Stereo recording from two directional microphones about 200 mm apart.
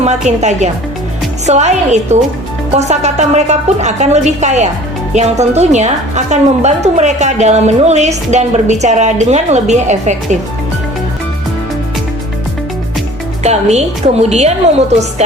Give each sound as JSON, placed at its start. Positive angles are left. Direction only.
{"t": 0.3, "sound": "a woman's voice", "side_deg": -35}
{"t": 13.4, "sound": "a woman's voice", "side_deg": -35}